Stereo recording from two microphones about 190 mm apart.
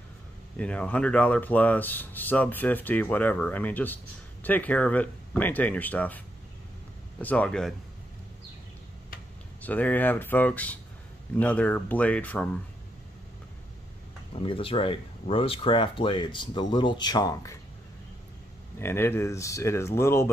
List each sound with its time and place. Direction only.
0.6 s speech: 5° left (ahead or behind)
9.6 s speech: 10° left (ahead or behind)
14.3 s speech: 30° left (ahead or behind)
18.8 s speech: 10° left (ahead or behind)